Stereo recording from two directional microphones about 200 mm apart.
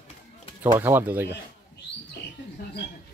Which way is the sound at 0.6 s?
10° right (ahead or behind).